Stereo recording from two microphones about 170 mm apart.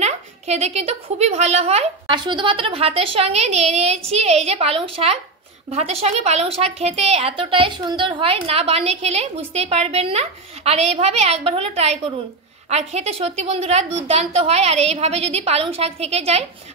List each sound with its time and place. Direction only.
0.0 s a woman's voice: 40° right (ahead or behind)